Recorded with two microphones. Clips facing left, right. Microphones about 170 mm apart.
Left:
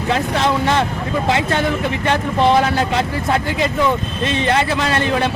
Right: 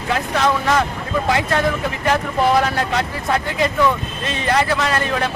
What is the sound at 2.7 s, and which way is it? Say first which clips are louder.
Speech: left 3 dB; 25° left (ahead or behind).